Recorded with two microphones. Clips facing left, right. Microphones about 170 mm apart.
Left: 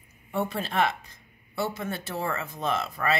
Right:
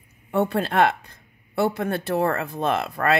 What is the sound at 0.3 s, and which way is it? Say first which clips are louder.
Speech: right 7 dB; 60° right (ahead or behind).